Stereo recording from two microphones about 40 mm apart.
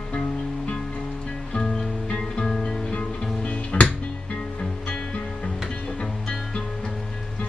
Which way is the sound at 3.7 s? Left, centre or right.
Left.